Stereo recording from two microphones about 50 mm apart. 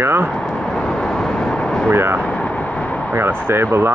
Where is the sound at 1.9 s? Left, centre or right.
Right.